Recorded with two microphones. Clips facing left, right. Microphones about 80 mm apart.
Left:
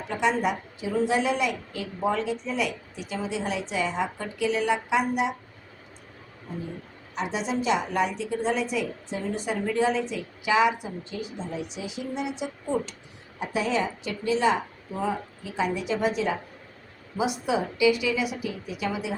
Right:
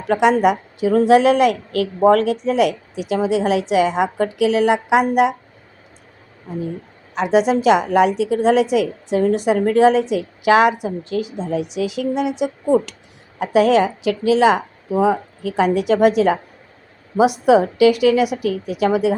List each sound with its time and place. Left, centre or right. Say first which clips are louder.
0.1 s a woman's voice: right 11 dB; right
7.1 s a woman's voice: right 13 dB; right